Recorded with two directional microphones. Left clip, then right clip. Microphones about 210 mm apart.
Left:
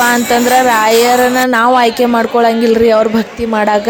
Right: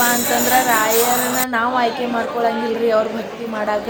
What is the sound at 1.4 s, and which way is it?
A woman's voice, 50° left (ahead or behind).